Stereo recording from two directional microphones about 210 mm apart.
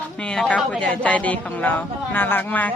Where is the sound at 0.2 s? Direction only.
5° left (ahead or behind).